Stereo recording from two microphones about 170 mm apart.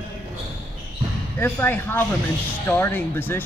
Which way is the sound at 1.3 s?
15° left (ahead or behind).